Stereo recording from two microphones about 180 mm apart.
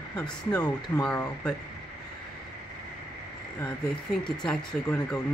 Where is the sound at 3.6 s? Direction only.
5° left (ahead or behind).